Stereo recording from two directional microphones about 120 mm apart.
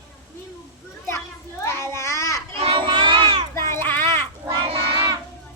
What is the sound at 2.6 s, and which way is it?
Crowd, 50° right (ahead or behind).